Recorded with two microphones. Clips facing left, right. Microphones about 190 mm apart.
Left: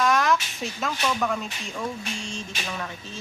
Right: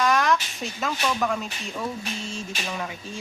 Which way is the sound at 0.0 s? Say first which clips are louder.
Even; centre (ahead or behind).